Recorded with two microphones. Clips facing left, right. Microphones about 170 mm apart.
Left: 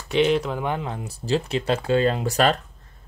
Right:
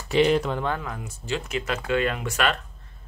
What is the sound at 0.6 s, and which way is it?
Speech, 20° left (ahead or behind).